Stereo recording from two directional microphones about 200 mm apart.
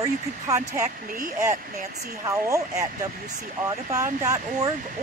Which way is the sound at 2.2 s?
15° right (ahead or behind).